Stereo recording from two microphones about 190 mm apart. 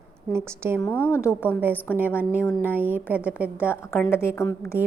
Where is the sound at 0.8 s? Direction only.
10° left (ahead or behind).